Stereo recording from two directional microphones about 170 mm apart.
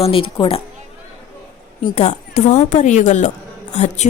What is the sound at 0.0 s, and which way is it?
Speech, 30° left (ahead or behind).